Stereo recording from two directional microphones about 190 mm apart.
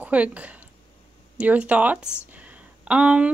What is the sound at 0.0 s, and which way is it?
A woman's voice, 5° right (ahead or behind).